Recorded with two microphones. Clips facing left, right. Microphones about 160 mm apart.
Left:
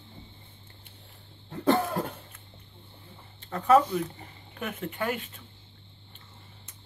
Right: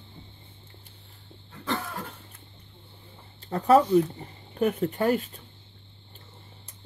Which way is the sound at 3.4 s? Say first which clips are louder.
Right 2 dB; 35° right (ahead or behind).